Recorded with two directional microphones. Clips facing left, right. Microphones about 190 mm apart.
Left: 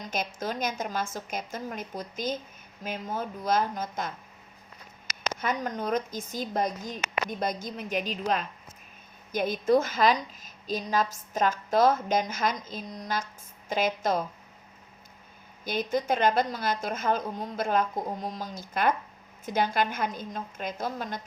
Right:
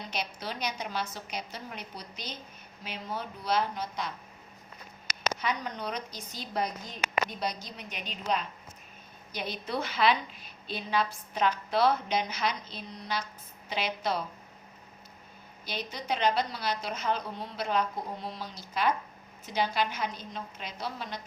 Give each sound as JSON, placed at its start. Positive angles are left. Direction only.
{"t": 0.0, "sound": "a woman's voice", "side_deg": 45}
{"t": 5.4, "sound": "a woman's voice", "side_deg": 45}
{"t": 15.6, "sound": "a woman's voice", "side_deg": 50}